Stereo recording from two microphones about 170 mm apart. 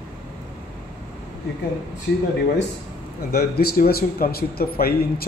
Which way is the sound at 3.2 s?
65° left (ahead or behind).